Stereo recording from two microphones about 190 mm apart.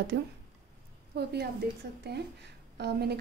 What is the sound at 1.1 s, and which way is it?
A woman's voice, 60° right (ahead or behind).